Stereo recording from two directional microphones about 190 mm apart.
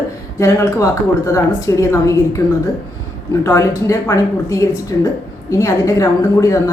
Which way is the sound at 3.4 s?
15° left (ahead or behind).